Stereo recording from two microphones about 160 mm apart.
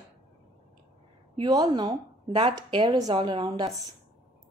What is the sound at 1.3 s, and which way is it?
A woman's voice, 25° right (ahead or behind).